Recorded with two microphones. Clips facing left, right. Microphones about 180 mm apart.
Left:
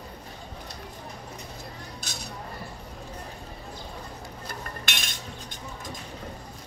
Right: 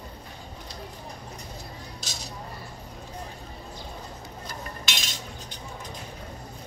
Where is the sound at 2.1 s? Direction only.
55° left (ahead or behind).